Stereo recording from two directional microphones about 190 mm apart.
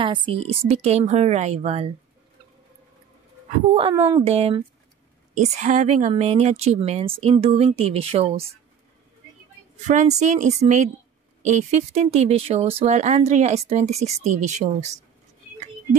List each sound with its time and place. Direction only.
0.0 s speech: 25° right (ahead or behind)
3.9 s speech: 15° right (ahead or behind)
4.2 s speech: 30° right (ahead or behind)
9.8 s speech: 35° right (ahead or behind)